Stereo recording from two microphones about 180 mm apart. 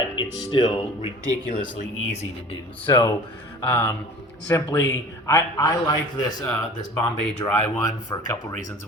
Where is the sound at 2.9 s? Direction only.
15° left (ahead or behind).